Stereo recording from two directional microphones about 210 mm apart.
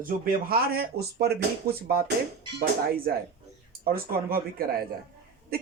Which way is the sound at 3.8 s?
45° right (ahead or behind).